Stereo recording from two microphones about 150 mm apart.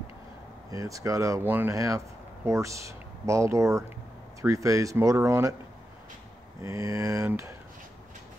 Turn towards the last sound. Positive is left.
turn(degrees=-20)  # may be behind; listen again after turning